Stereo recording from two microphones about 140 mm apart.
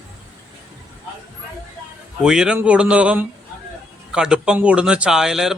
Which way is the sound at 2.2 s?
5° right (ahead or behind).